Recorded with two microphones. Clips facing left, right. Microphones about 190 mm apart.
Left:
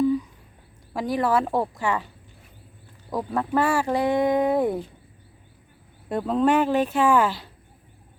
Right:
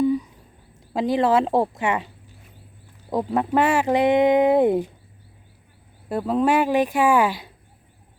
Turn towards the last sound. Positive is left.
turn(degrees=-15)  # may be behind; listen again after turning